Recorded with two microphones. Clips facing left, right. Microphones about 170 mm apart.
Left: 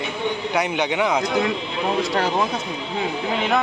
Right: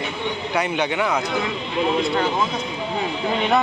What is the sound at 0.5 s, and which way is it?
Speech, 15° left (ahead or behind).